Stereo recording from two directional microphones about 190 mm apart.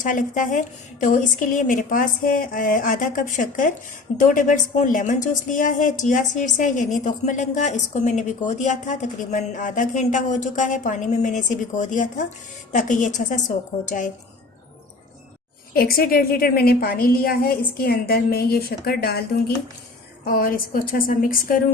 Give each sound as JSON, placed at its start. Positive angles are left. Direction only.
{"t": 0.0, "sound": "a woman's voice", "side_deg": 45}
{"t": 15.7, "sound": "a woman's voice", "side_deg": 50}